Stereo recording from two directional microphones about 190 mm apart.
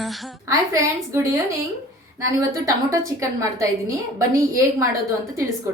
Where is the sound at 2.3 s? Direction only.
15° right (ahead or behind).